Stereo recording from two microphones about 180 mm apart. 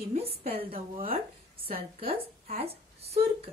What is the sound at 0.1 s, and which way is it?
A woman's voice, 35° right (ahead or behind).